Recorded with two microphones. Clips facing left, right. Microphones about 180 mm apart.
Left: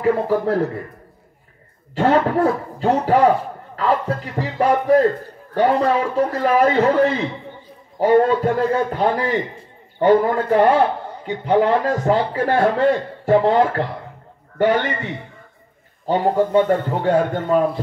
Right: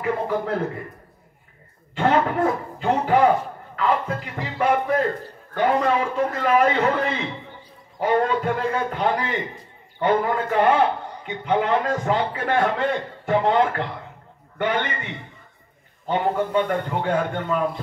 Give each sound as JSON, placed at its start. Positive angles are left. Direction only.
{"t": 0.0, "sound": "a man's voice", "side_deg": 35}
{"t": 2.0, "sound": "a man's voice", "side_deg": 35}
{"t": 16.1, "sound": "a man's voice", "side_deg": 35}